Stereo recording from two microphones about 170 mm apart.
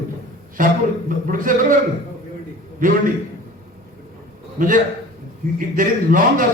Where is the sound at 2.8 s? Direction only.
50° right (ahead or behind).